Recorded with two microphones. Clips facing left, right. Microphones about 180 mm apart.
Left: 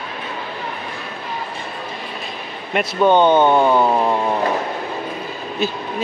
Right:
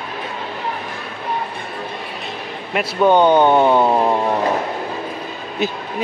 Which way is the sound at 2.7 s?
10° right (ahead or behind).